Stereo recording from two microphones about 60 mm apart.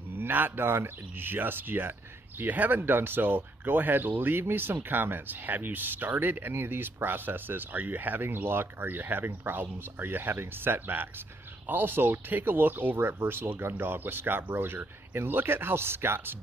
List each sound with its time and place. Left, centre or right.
0.1 s speech: right